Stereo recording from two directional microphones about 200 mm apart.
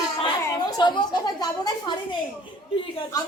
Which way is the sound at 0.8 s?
20° left (ahead or behind).